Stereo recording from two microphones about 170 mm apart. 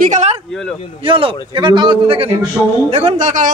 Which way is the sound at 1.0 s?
30° right (ahead or behind).